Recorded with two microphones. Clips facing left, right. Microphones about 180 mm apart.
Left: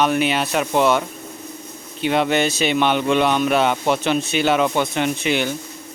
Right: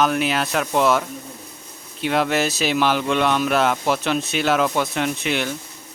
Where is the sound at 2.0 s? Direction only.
Centre (ahead or behind).